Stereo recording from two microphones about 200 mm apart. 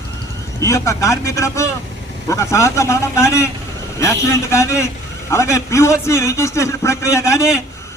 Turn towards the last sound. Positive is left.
turn(degrees=15)  # may be behind; listen again after turning